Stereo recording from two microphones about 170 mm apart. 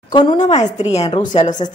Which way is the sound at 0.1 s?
30° left (ahead or behind).